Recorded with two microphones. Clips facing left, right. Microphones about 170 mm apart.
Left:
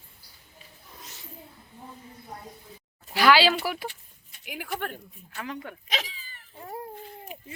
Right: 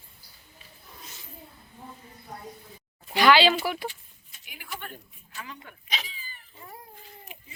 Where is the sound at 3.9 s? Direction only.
65° left (ahead or behind).